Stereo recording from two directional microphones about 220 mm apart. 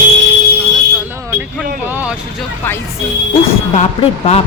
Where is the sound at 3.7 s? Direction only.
30° left (ahead or behind).